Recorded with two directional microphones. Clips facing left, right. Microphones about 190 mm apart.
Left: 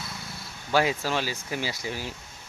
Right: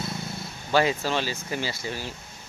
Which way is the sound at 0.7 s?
5° left (ahead or behind).